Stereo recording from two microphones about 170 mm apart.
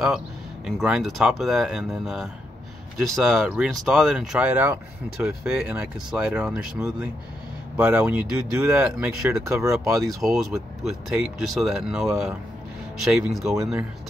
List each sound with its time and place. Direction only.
0.7 s speech: centre (ahead or behind)
10.0 s speech: centre (ahead or behind)